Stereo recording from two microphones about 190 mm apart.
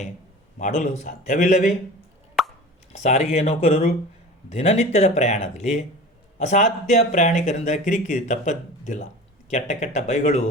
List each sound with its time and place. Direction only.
0.6 s speech: 40° left (ahead or behind)
3.0 s speech: 40° left (ahead or behind)